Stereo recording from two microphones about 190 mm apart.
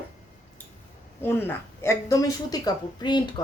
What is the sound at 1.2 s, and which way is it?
Speech, 10° left (ahead or behind).